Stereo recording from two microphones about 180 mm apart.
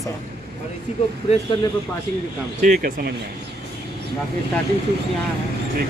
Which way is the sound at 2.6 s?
55° right (ahead or behind).